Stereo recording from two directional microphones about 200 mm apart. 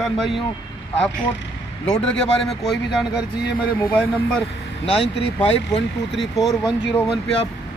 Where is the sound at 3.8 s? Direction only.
10° left (ahead or behind).